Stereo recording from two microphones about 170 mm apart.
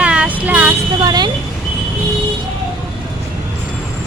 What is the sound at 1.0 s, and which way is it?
Speech, 25° right (ahead or behind).